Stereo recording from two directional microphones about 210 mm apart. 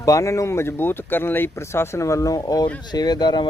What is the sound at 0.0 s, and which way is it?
Speech, 15° left (ahead or behind).